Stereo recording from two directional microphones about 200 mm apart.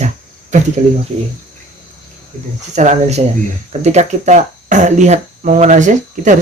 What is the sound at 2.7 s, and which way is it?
Speech, 35° right (ahead or behind).